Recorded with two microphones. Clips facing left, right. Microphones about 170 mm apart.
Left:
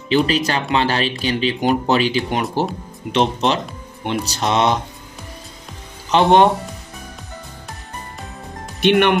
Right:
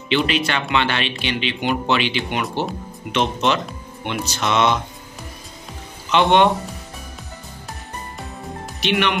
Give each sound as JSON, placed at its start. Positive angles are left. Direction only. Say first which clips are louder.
{"t": 0.1, "sound": "speech", "louder": "left 3 dB", "side_deg": 35}
{"t": 6.0, "sound": "speech", "louder": "left 2 dB", "side_deg": 35}
{"t": 8.8, "sound": "speech", "louder": "left 6 dB", "side_deg": 50}